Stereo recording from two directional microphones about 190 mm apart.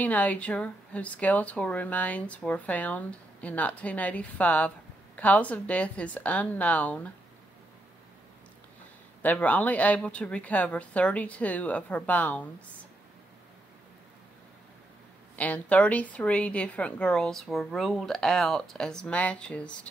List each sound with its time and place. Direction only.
0.0 s speech: 10° left (ahead or behind)
9.2 s speech: 10° left (ahead or behind)
15.3 s a woman's voice: 10° left (ahead or behind)